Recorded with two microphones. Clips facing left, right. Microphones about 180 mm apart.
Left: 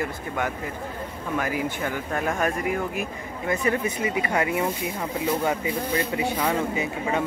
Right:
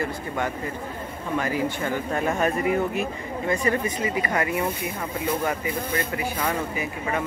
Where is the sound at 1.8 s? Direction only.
Centre (ahead or behind).